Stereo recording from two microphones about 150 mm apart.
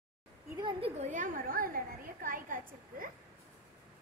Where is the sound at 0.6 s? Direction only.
35° right (ahead or behind); by 3.1 s 65° right (ahead or behind).